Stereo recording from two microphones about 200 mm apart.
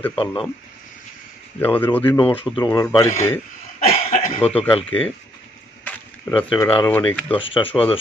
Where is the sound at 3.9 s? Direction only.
40° left (ahead or behind).